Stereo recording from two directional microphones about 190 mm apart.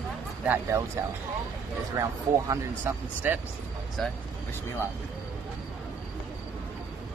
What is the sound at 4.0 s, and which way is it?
Speech, centre (ahead or behind).